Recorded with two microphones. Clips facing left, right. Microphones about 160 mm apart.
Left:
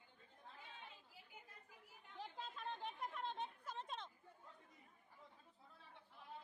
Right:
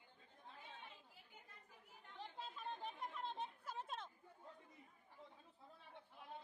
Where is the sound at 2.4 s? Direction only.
Centre (ahead or behind).